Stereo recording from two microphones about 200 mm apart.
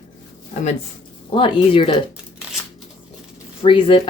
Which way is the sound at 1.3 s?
25° left (ahead or behind).